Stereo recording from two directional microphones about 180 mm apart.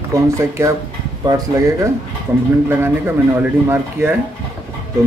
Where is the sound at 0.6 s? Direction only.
15° right (ahead or behind).